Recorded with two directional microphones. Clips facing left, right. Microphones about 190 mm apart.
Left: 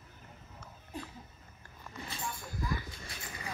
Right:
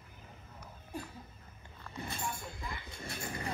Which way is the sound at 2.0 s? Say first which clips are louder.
Right 2 dB; 55° right (ahead or behind).